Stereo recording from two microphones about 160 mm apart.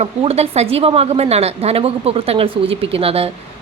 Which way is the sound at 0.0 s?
40° right (ahead or behind).